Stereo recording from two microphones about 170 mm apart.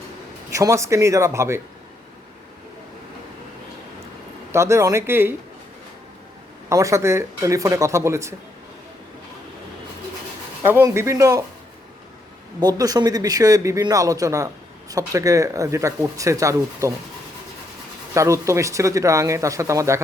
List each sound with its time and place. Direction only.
0.5 s speech: 20° right (ahead or behind)
4.5 s speech: 15° right (ahead or behind)
6.7 s speech: 20° right (ahead or behind)
10.7 s speech: 15° right (ahead or behind)
12.5 s speech: 20° right (ahead or behind)
18.1 s speech: 15° right (ahead or behind)